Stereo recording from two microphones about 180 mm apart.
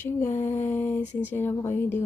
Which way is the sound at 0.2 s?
40° left (ahead or behind).